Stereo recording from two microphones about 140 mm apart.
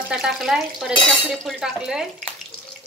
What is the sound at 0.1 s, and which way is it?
Dishes, 5° right (ahead or behind).